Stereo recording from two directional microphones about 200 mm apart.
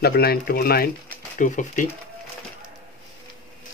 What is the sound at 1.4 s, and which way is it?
Speech, 40° left (ahead or behind).